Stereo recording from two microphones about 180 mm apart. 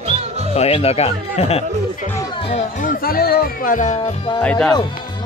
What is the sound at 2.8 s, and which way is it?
Speech, 50° left (ahead or behind).